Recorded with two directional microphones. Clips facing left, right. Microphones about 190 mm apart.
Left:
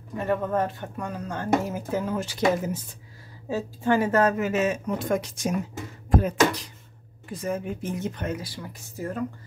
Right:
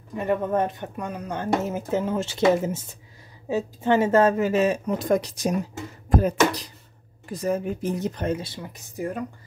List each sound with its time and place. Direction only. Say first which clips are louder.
0.2 s speech: right 2 dB; 15° right (ahead or behind); by 5.6 s 35° right (ahead or behind)
6.0 s beatboxing: right 1 dB; 40° right (ahead or behind)
7.2 s speech: right 4 dB; 35° right (ahead or behind); by 9.2 s 15° right (ahead or behind)